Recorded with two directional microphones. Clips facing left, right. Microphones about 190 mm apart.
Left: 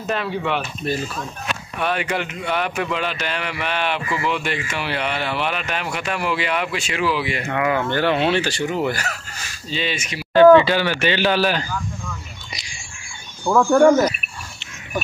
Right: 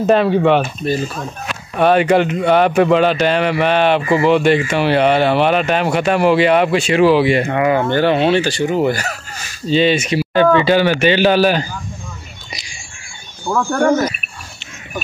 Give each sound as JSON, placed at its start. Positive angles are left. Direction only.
{"t": 0.0, "sound": "speech", "side_deg": -30}
{"t": 1.8, "sound": "speech", "side_deg": -30}
{"t": 10.3, "sound": "speech", "side_deg": -15}
{"t": 13.5, "sound": "speech", "side_deg": 0}